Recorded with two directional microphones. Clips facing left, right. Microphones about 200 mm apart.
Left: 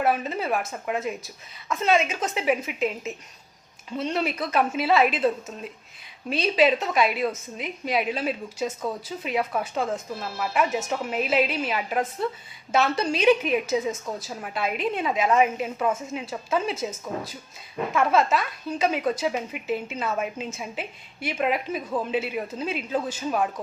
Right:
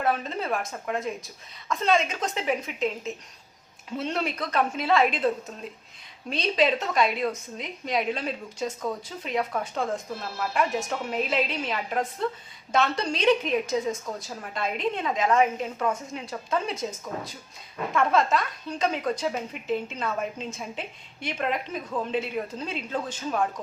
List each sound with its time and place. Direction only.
0.0 s a woman's voice: 5° left (ahead or behind)